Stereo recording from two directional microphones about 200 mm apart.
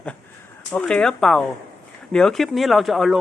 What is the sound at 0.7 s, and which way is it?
Speech, 5° left (ahead or behind).